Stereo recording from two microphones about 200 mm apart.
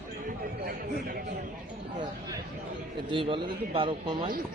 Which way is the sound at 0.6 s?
50° right (ahead or behind).